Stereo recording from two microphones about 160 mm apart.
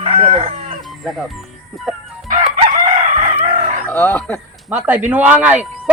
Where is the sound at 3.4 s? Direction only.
45° right (ahead or behind).